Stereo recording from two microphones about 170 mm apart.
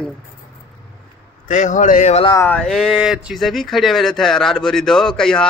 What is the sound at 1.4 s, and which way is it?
Speech, 45° left (ahead or behind).